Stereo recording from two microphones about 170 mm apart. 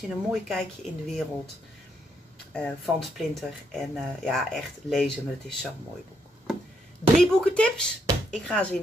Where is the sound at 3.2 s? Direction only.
Centre (ahead or behind).